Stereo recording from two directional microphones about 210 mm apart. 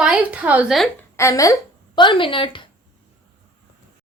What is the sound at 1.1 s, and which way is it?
Speech, 15° left (ahead or behind).